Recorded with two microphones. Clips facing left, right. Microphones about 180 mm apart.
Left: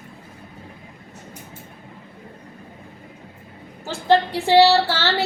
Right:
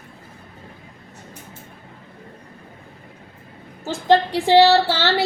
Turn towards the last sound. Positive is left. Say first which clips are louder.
# right 2 dB
turn(degrees=-15)  # may be behind; listen again after turning